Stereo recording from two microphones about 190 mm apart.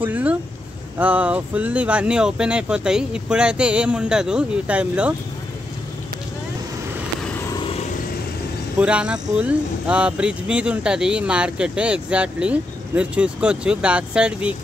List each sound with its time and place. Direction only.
0.0 s vehicle: 10° right (ahead or behind)
0.9 s speech: 5° right (ahead or behind)
8.7 s speech: 5° right (ahead or behind)